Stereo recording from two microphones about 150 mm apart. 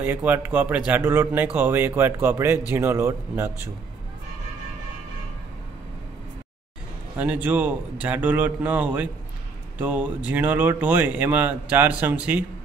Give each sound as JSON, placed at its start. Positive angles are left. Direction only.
{"t": 0.0, "sound": "speech", "side_deg": -10}
{"t": 7.4, "sound": "speech", "side_deg": -10}